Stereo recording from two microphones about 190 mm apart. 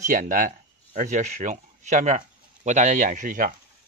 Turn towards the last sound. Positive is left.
turn(degrees=-45)  # may be behind; listen again after turning